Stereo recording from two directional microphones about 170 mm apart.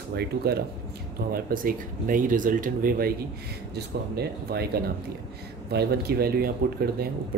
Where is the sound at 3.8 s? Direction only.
70° right (ahead or behind).